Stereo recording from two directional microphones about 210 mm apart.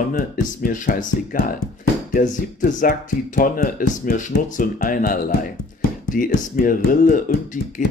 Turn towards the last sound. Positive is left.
turn(degrees=40)  # may be behind; listen again after turning